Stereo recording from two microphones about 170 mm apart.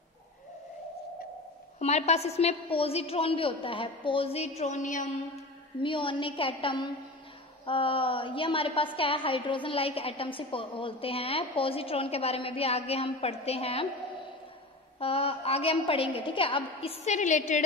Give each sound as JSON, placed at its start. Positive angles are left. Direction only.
{"t": 1.8, "sound": "a woman's voice", "side_deg": 40}
{"t": 5.8, "sound": "a woman's voice", "side_deg": 30}
{"t": 15.0, "sound": "a woman's voice", "side_deg": 35}